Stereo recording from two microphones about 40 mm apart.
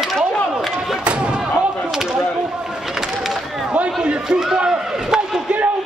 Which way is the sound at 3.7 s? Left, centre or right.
Right.